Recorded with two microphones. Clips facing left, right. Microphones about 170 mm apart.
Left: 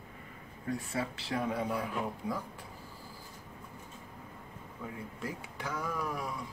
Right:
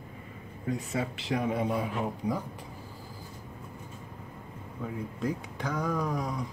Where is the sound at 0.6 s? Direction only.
20° right (ahead or behind).